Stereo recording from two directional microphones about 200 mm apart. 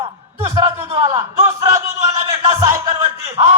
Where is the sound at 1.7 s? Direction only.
15° right (ahead or behind).